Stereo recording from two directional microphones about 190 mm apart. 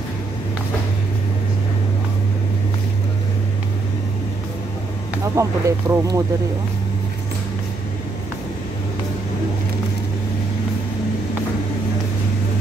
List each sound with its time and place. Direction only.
5.3 s speech: 15° right (ahead or behind)